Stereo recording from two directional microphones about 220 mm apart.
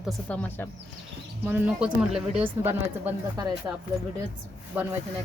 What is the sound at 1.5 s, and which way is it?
Speech, 5° right (ahead or behind).